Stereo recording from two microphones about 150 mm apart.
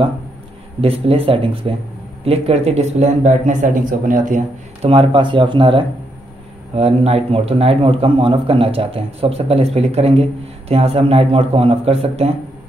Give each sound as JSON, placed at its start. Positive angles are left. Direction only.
{"t": 0.7, "sound": "a man's voice", "side_deg": -40}
{"t": 4.8, "sound": "a man's voice", "side_deg": -35}